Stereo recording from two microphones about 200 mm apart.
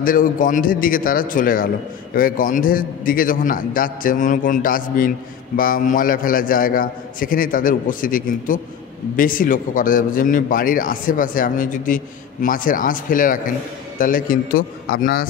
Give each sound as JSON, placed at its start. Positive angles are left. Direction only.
{"t": 0.0, "sound": "a man's voice", "side_deg": 45}